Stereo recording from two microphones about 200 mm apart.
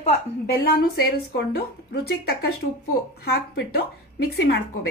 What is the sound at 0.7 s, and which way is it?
A woman's voice, 50° left (ahead or behind).